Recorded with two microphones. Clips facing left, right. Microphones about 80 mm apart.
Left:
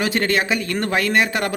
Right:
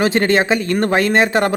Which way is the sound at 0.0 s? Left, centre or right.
Right.